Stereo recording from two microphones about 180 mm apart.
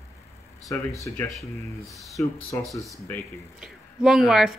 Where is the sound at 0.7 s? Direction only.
15° left (ahead or behind).